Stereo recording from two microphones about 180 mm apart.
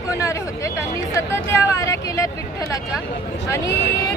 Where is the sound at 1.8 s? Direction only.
15° left (ahead or behind).